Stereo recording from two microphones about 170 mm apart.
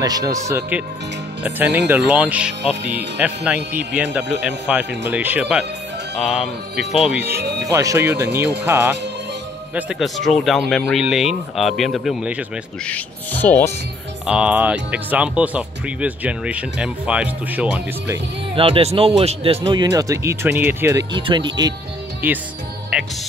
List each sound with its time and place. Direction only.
0.0 s speech: 20° right (ahead or behind)
2.0 s speech: 10° right (ahead or behind)
9.8 s speech: 5° right (ahead or behind)
12.8 s speech: 10° left (ahead or behind)
14.2 s speech: 5° right (ahead or behind)
18.5 s speech: 35° right (ahead or behind); by 21.0 s 15° right (ahead or behind)
21.1 s speech: 25° right (ahead or behind)
22.2 s speech: 10° right (ahead or behind)
22.9 s music: 5° right (ahead or behind)